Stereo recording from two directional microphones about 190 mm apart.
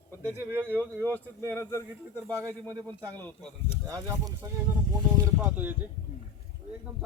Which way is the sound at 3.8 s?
20° right (ahead or behind).